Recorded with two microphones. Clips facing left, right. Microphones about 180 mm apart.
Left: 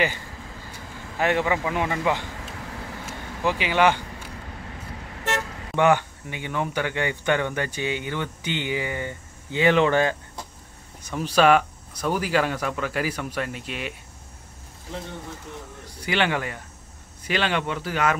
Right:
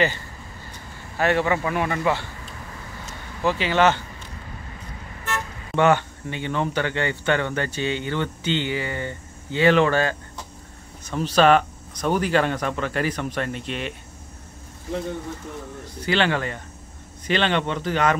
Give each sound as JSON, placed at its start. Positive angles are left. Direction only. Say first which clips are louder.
{"t": 0.7, "sound": "speech", "louder": "left 2 dB", "side_deg": 15}
{"t": 3.1, "sound": "a sound", "louder": "right 2 dB", "side_deg": 15}
{"t": 5.3, "sound": "vehicle", "louder": "left 3 dB", "side_deg": 85}
{"t": 5.8, "sound": "speech", "louder": "right 1 dB", "side_deg": 10}
{"t": 15.9, "sound": "speech", "louder": "right 2 dB", "side_deg": 10}